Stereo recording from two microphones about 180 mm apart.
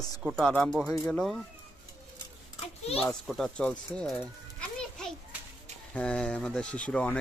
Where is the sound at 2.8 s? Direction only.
35° left (ahead or behind).